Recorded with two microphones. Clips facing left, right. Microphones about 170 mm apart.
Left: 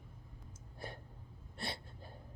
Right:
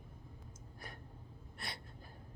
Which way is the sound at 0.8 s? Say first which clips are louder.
Left 6 dB; 30° left (ahead or behind).